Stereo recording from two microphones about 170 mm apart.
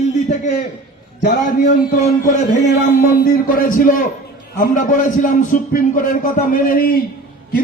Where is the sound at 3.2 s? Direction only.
55° left (ahead or behind).